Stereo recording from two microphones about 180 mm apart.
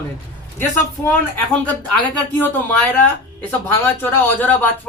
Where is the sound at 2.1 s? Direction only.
10° left (ahead or behind).